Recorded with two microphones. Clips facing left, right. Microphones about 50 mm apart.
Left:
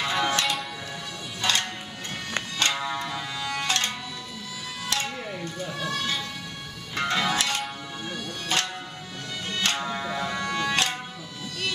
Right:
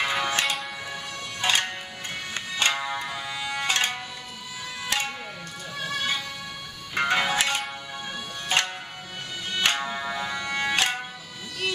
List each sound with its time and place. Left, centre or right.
0.0 s music: centre
9.6 s music: right
9.8 s music: centre